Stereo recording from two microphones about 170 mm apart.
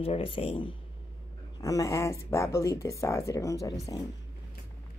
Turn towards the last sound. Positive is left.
turn(degrees=20)  # may be behind; listen again after turning